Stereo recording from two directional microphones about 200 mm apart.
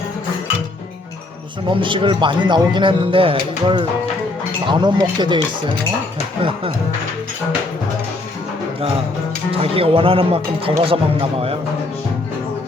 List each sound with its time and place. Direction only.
1.6 s a man's voice: 25° right (ahead or behind)
9.5 s a man's voice: 30° right (ahead or behind)